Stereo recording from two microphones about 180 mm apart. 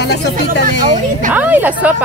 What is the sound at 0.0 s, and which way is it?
Speech, 70° left (ahead or behind).